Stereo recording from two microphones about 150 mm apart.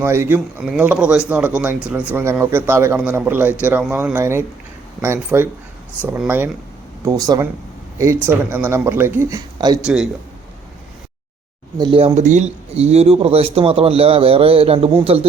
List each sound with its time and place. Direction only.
0.0 s speech: 15° right (ahead or behind)
7.0 s speech: 25° right (ahead or behind)
9.8 s a man's voice: 5° right (ahead or behind)
11.8 s speech: 35° right (ahead or behind)